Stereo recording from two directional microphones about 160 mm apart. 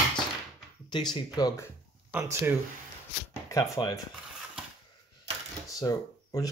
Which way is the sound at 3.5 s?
25° left (ahead or behind).